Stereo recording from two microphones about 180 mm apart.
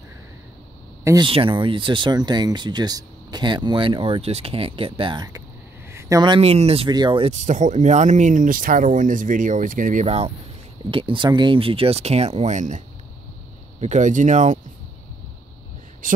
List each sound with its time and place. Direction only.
1.0 s speech: 20° right (ahead or behind); by 14.6 s 40° right (ahead or behind)